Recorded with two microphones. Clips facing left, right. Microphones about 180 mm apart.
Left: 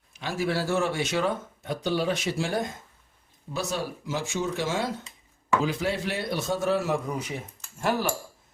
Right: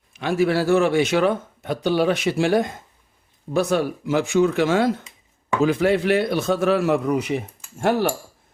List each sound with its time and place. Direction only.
0.2 s speech: 65° right (ahead or behind)
3.5 s a man's voice: 55° right (ahead or behind)